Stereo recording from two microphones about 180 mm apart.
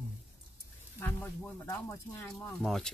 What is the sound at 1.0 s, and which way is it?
Speech, 10° left (ahead or behind).